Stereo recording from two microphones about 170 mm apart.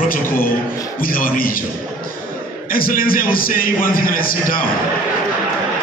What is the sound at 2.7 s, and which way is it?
A man's voice, 60° left (ahead or behind).